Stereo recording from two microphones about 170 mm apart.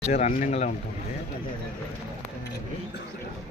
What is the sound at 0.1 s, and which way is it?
Speech, 45° left (ahead or behind).